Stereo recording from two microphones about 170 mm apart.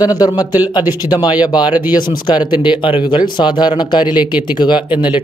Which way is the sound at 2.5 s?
25° left (ahead or behind).